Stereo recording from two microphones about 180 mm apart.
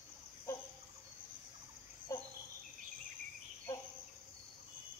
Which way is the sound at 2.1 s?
15° left (ahead or behind).